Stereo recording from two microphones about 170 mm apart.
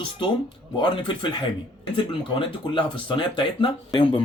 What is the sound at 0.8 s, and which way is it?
Speech, 30° left (ahead or behind).